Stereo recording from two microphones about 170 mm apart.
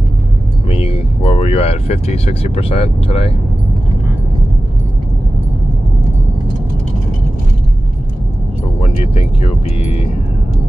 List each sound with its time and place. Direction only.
0.7 s speech: 35° left (ahead or behind)
8.8 s speech: 35° left (ahead or behind)